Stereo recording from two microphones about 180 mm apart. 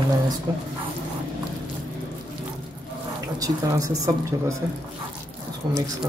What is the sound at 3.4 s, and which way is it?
Speech, 20° right (ahead or behind).